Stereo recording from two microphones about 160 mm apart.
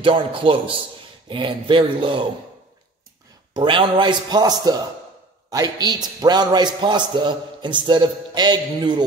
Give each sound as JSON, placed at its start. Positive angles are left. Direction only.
{"t": 0.0, "sound": "a man's voice", "side_deg": -35}
{"t": 3.5, "sound": "a man's voice", "side_deg": -30}